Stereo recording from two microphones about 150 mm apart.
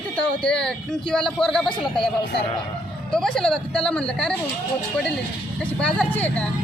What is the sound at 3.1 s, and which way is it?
A man's voice, 5° left (ahead or behind).